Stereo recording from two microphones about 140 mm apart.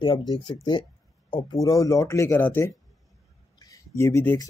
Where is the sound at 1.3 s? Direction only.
25° left (ahead or behind).